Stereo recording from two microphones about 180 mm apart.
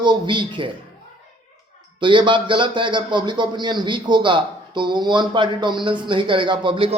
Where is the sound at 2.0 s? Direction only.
25° right (ahead or behind).